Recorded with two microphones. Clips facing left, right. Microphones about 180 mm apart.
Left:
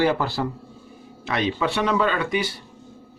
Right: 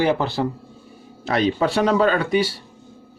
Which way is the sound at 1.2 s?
35° right (ahead or behind).